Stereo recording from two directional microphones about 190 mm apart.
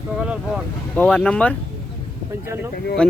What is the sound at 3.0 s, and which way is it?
Speech, 5° left (ahead or behind).